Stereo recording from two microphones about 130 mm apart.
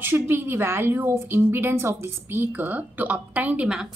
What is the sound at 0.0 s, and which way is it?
A woman's voice, 15° right (ahead or behind).